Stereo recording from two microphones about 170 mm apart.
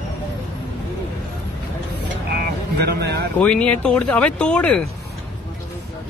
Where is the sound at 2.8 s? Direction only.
75° right (ahead or behind).